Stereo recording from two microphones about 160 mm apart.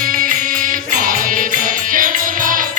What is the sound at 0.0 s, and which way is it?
Music, 60° right (ahead or behind).